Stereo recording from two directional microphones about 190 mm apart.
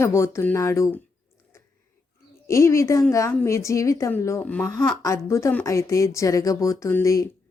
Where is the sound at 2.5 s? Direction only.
15° left (ahead or behind).